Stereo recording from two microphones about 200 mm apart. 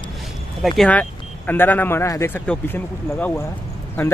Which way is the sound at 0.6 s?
Centre (ahead or behind).